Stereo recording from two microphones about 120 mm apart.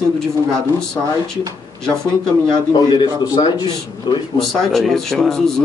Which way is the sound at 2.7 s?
35° left (ahead or behind).